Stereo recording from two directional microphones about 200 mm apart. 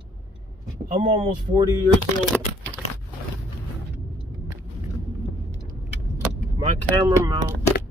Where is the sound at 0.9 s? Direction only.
35° right (ahead or behind).